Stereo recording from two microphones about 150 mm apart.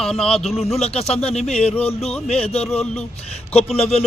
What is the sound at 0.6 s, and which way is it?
Speech, 45° left (ahead or behind).